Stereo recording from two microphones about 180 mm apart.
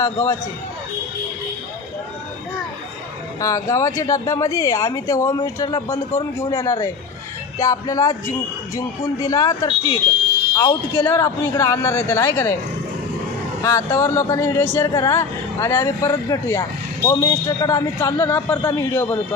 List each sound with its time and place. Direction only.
0.0 s speech: 15° left (ahead or behind)
3.3 s speech: 15° left (ahead or behind)
13.6 s speech: 15° left (ahead or behind)